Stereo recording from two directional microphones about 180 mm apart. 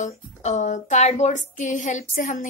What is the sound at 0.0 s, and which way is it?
Speech, 40° left (ahead or behind).